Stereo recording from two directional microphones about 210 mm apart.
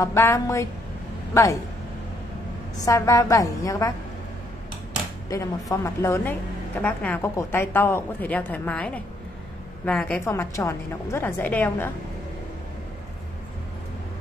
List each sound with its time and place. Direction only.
0.0 s a woman's voice: 15° left (ahead or behind)
2.8 s a woman's voice: 15° left (ahead or behind)
5.3 s a woman's voice: 15° left (ahead or behind)